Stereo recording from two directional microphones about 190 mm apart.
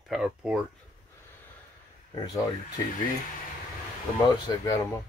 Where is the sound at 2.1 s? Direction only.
20° left (ahead or behind).